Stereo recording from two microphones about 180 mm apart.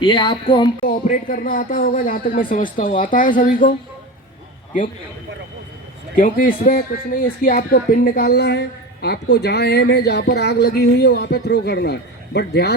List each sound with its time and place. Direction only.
0.0 s speech: 25° left (ahead or behind)
0.8 s speech: 50° left (ahead or behind)
6.1 s a woman's voice: 50° left (ahead or behind); by 12.7 s 65° left (ahead or behind)